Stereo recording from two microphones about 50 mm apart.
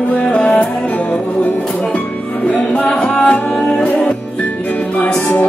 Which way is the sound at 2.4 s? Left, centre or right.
Left.